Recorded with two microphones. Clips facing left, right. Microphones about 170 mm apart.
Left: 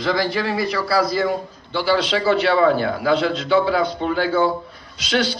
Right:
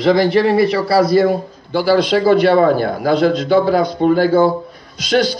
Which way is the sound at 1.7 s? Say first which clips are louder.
Right 6 dB; 45° right (ahead or behind).